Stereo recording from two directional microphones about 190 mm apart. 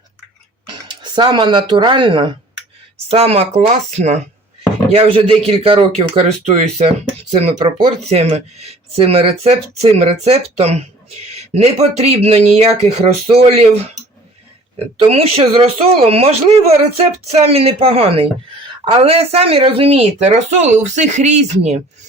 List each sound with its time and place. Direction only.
0.9 s speech: 20° right (ahead or behind)
14.9 s speech: 30° right (ahead or behind)